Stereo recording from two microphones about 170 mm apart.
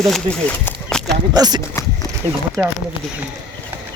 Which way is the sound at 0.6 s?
5° left (ahead or behind).